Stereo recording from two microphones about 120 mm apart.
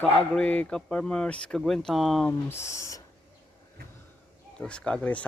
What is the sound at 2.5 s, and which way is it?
Speech, 25° left (ahead or behind).